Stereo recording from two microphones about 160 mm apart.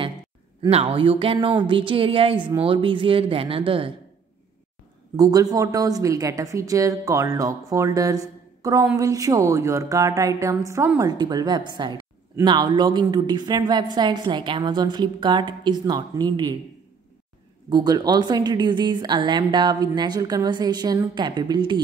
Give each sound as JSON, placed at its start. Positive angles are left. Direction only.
{"t": 0.6, "sound": "a woman's voice", "side_deg": -35}
{"t": 5.1, "sound": "a woman's voice", "side_deg": -20}
{"t": 17.6, "sound": "a woman's voice", "side_deg": -25}